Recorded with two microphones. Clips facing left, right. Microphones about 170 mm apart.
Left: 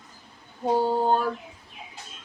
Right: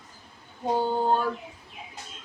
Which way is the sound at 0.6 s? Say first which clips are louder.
Left 2 dB; 5° left (ahead or behind).